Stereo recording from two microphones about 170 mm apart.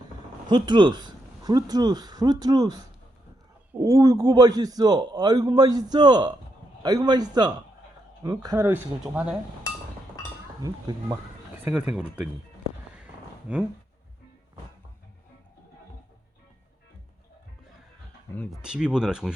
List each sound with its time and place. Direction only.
0.4 s a man's voice: 25° right (ahead or behind); by 9.3 s 10° right (ahead or behind)
10.6 s speech: 20° right (ahead or behind); by 12.0 s 5° right (ahead or behind)
13.5 s speech: 5° right (ahead or behind)
18.5 s speech: 5° right (ahead or behind)